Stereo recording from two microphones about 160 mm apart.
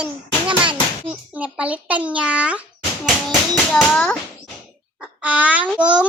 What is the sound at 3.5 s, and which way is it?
Speech, 10° left (ahead or behind).